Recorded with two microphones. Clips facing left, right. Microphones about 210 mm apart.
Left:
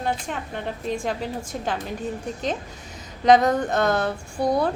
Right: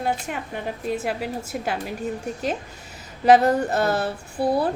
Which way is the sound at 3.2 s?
5° right (ahead or behind).